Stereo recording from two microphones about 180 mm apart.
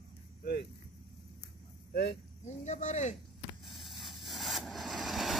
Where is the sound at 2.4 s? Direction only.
40° left (ahead or behind).